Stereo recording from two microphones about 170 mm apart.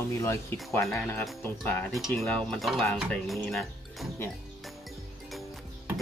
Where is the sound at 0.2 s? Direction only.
15° left (ahead or behind).